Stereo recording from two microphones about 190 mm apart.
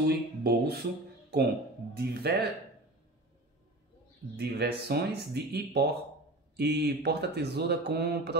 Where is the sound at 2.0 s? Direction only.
55° right (ahead or behind).